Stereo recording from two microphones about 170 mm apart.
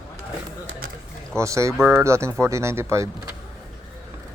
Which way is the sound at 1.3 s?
15° right (ahead or behind).